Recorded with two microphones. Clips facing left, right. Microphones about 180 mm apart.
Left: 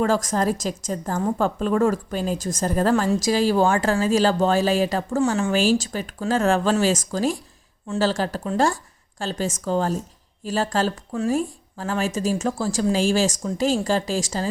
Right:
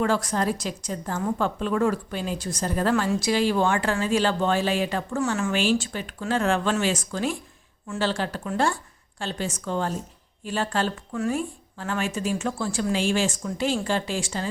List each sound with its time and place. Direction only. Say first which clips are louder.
0.0 s a woman's voice: left 3 dB; 40° left (ahead or behind)